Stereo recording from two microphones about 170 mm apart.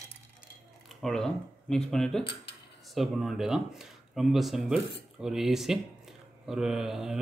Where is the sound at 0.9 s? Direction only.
Centre (ahead or behind).